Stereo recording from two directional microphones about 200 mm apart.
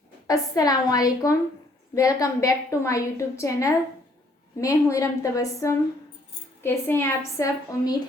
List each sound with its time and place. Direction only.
0.3 s a woman's voice: 20° left (ahead or behind)